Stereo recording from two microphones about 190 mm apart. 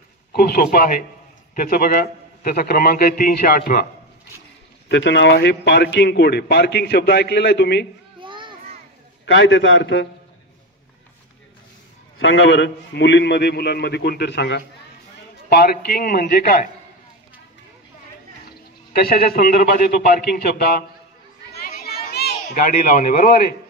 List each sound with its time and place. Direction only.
0.3 s a man's voice: 55° left (ahead or behind)
4.8 s a man's voice: 70° left (ahead or behind)
8.2 s children playing: 25° right (ahead or behind)
9.2 s a man's voice: 70° left (ahead or behind)
12.2 s a man's voice: 75° left (ahead or behind); by 16.6 s 50° left (ahead or behind)
18.9 s a man's voice: 50° left (ahead or behind)
21.5 s children playing: 55° left (ahead or behind)